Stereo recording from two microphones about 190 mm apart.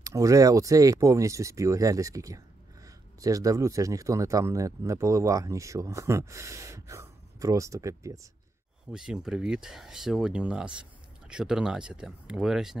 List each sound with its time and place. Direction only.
0.0 s speech: 15° right (ahead or behind)
8.9 s speech: 5° right (ahead or behind)